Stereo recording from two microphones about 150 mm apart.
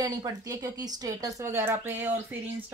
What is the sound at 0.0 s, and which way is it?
Speech, 25° right (ahead or behind).